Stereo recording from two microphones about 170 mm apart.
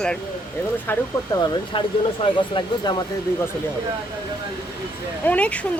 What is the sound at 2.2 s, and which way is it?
Speech, 30° left (ahead or behind).